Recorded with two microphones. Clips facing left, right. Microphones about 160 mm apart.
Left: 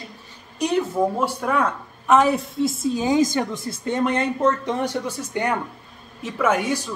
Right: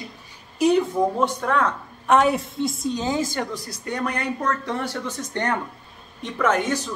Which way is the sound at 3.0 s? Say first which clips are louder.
Left 7 dB; 15° left (ahead or behind).